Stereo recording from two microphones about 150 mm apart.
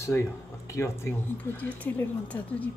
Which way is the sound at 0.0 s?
20° left (ahead or behind).